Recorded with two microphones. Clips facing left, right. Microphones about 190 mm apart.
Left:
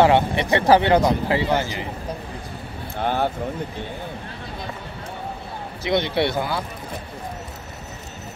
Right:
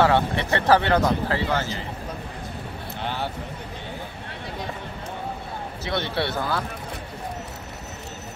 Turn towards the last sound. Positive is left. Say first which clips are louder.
# left 3 dB
turn(degrees=15)  # may be behind; listen again after turning